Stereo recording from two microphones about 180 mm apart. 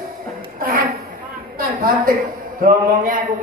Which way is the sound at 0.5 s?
55° right (ahead or behind).